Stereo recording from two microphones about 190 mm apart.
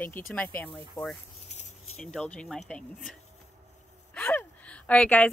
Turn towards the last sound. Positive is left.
turn(degrees=5)  # may be behind; listen again after turning